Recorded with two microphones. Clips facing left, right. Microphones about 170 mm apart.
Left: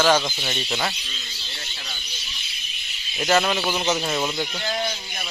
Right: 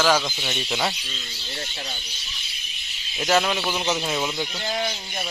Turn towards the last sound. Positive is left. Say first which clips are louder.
# left 1 dB
turn(degrees=5)  # may be behind; listen again after turning